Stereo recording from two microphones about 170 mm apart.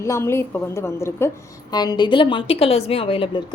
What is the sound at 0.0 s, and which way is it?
A woman's voice, 15° left (ahead or behind).